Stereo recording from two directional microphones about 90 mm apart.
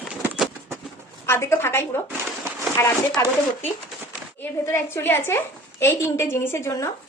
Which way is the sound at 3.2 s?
30° left (ahead or behind).